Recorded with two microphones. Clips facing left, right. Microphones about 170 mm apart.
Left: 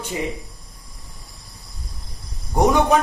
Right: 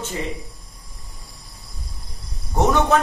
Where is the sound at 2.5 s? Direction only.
15° left (ahead or behind).